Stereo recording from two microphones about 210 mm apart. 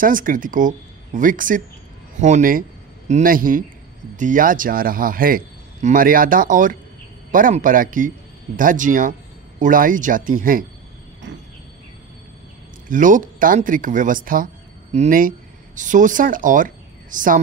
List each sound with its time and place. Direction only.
0.0 s a man's voice: 40° right (ahead or behind)
12.8 s speech: 40° right (ahead or behind)